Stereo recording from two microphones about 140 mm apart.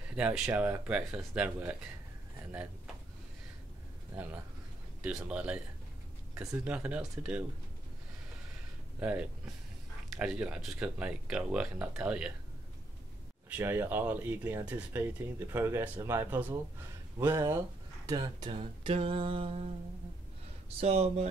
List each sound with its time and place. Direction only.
0.1 s speech: 10° right (ahead or behind)
5.0 s speech: 10° right (ahead or behind)
9.0 s speech: 10° right (ahead or behind)
13.5 s speech: 15° right (ahead or behind)
18.0 s a sound: 30° right (ahead or behind)
20.8 s speech: 50° right (ahead or behind)